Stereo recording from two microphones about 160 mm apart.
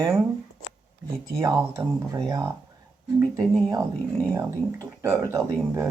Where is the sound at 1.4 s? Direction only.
20° right (ahead or behind).